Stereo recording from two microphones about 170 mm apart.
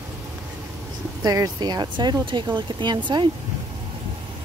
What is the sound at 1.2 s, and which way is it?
Speech, 20° right (ahead or behind).